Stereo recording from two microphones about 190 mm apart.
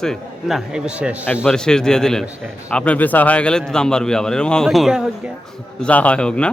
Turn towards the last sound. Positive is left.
turn(degrees=5)  # may be behind; listen again after turning